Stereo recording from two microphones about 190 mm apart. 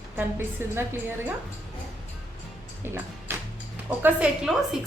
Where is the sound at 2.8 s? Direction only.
10° right (ahead or behind).